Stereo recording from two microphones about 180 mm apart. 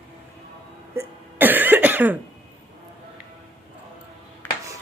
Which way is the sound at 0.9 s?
10° right (ahead or behind).